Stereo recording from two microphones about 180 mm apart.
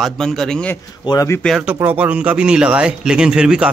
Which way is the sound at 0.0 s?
Centre (ahead or behind).